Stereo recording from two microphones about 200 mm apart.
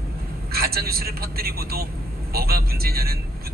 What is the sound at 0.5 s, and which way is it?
Speech, 50° right (ahead or behind).